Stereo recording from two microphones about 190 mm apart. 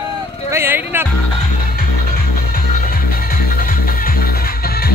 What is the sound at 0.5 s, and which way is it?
Speech, 10° right (ahead or behind).